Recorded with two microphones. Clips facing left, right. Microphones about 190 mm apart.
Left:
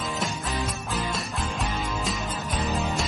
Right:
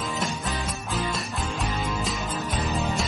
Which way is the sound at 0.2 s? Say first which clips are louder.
Even; centre (ahead or behind).